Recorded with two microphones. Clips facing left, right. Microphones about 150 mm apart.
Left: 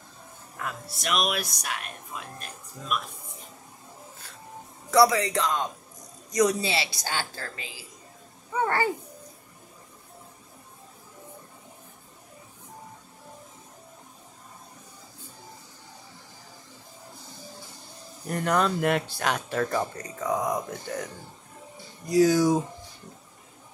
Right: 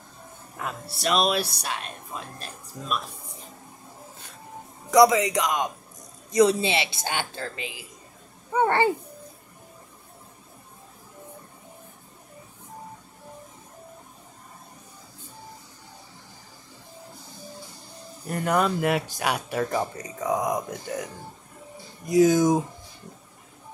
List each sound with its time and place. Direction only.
0.6 s speech: 25° right (ahead or behind)
4.9 s a woman's voice: 20° right (ahead or behind)
18.2 s a woman's voice: 5° right (ahead or behind); by 22.6 s 20° right (ahead or behind)